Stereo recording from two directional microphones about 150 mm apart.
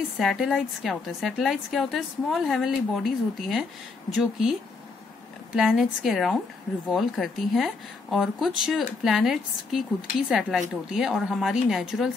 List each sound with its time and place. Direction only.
0.2 s a woman's voice: centre (ahead or behind)
5.6 s a woman's voice: centre (ahead or behind)